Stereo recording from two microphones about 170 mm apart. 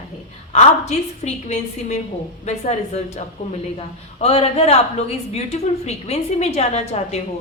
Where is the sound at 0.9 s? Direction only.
40° left (ahead or behind).